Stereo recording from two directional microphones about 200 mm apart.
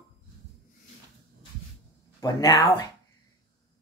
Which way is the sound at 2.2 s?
20° left (ahead or behind).